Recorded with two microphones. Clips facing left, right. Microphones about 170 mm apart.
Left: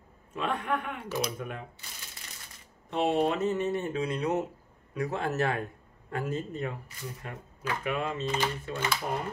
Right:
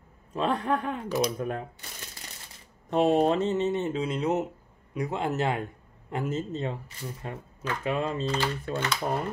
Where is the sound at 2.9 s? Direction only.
40° right (ahead or behind).